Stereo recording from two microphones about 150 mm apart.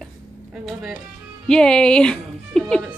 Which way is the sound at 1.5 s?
5° left (ahead or behind).